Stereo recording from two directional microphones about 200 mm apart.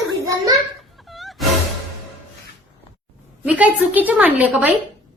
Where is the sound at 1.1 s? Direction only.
Centre (ahead or behind).